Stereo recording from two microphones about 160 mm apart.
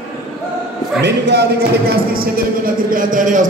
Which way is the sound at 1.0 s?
90° right.